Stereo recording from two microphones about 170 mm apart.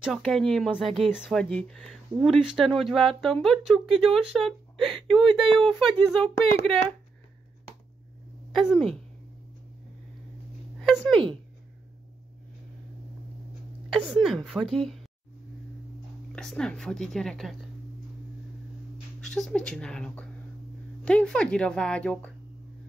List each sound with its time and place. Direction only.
0.0 s speech: centre (ahead or behind)
8.5 s a woman's voice: centre (ahead or behind)
10.8 s speech: 5° left (ahead or behind)
13.8 s a woman's voice: 5° right (ahead or behind)
16.3 s speech: 5° left (ahead or behind)
19.2 s speech: centre (ahead or behind)